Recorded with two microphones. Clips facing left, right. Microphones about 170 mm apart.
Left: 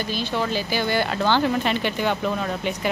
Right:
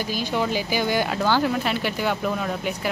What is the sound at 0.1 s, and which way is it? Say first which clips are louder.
Speech: right 1 dB; 15° right (ahead or behind).